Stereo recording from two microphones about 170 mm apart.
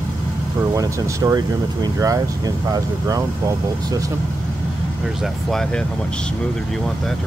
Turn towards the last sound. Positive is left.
turn(degrees=5)  # may be behind; listen again after turning